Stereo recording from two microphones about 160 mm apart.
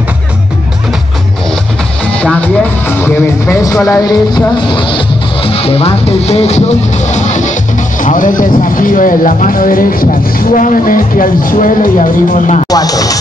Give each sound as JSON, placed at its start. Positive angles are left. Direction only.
{"t": 2.1, "sound": "music", "side_deg": 10}
{"t": 8.0, "sound": "speech", "side_deg": 55}
{"t": 12.6, "sound": "speech", "side_deg": 25}